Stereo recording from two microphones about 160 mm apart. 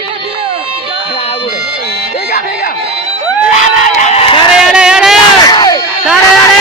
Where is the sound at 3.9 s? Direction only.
45° left (ahead or behind).